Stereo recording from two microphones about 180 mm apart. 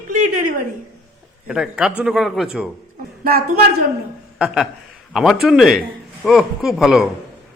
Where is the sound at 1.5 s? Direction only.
5° right (ahead or behind).